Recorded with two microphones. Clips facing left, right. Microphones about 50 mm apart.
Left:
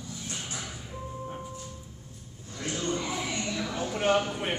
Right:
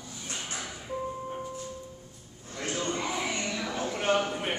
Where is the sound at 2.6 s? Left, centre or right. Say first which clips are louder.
Even; right.